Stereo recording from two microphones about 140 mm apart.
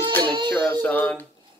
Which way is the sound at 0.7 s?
10° left (ahead or behind).